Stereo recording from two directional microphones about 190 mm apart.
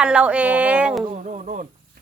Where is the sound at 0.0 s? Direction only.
5° right (ahead or behind).